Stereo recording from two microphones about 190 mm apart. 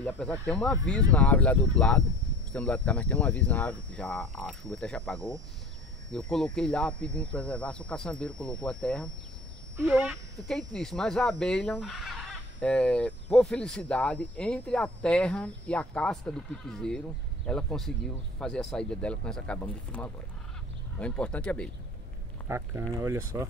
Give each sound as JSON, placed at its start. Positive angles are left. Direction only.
{"t": 0.0, "sound": "speech", "side_deg": 5}
{"t": 9.8, "sound": "speech", "side_deg": -10}
{"t": 10.7, "sound": "speech", "side_deg": 5}
{"t": 22.5, "sound": "speech", "side_deg": -15}